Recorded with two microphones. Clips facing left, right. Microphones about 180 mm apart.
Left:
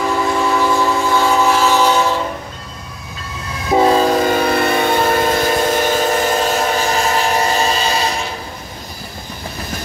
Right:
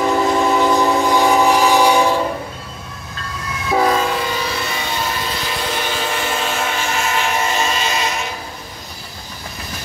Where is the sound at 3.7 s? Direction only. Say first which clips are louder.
Left 4 dB; 25° left (ahead or behind).